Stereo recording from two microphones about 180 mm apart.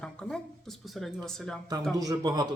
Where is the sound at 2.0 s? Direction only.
20° right (ahead or behind).